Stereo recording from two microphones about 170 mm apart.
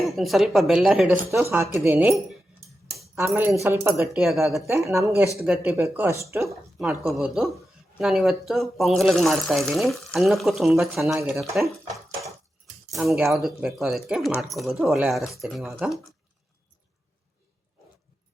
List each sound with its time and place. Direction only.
0.0 s speech: centre (ahead or behind); by 4.1 s 15° right (ahead or behind)
4.1 s speech: centre (ahead or behind)
4.9 s speech: 15° right (ahead or behind)
6.7 s speech: centre (ahead or behind)
12.9 s speech: centre (ahead or behind)